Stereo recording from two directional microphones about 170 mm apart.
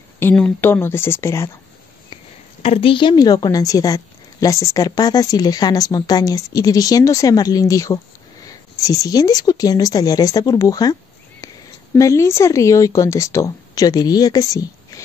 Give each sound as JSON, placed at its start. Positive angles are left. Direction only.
{"t": 0.2, "sound": "speech", "side_deg": 10}
{"t": 2.6, "sound": "a woman's voice", "side_deg": 35}